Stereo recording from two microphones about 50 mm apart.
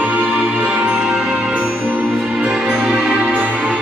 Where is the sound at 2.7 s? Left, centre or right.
Centre.